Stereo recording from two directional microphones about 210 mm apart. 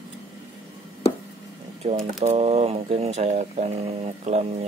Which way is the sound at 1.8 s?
30° right (ahead or behind).